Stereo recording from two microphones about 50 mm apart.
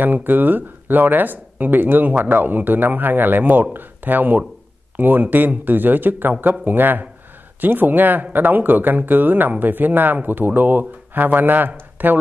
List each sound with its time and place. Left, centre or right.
0.0 s speech: right